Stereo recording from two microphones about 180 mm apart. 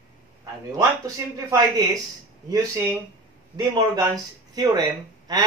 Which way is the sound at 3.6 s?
20° right (ahead or behind).